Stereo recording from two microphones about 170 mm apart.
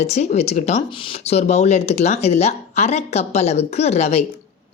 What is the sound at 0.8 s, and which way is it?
Speech, 30° left (ahead or behind).